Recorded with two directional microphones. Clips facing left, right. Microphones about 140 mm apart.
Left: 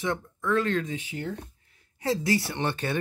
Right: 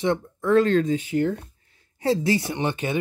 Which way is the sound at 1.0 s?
50° right (ahead or behind).